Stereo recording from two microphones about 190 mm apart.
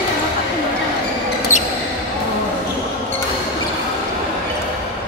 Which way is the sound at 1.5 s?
40° left (ahead or behind).